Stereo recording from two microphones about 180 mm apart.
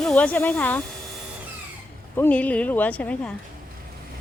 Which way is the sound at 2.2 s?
10° left (ahead or behind).